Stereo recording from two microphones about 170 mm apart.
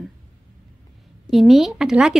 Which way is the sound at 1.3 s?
Centre (ahead or behind).